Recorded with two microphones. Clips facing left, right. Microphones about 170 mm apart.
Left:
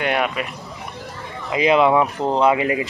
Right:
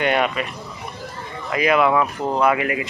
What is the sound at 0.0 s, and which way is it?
Speech, 5° left (ahead or behind).